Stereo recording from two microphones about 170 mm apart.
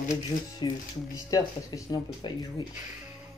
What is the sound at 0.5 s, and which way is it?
Speech, 25° left (ahead or behind).